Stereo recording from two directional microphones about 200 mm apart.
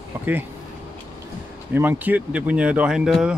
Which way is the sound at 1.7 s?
10° right (ahead or behind).